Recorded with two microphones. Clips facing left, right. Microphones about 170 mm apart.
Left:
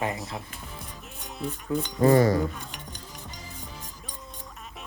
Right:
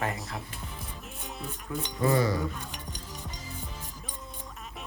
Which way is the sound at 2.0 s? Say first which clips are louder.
Left 6 dB; 50° left (ahead or behind).